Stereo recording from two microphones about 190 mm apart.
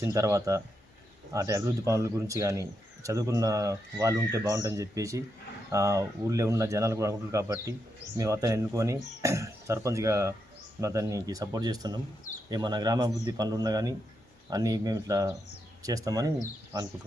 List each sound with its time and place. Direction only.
0.0 s a man's voice: 15° right (ahead or behind)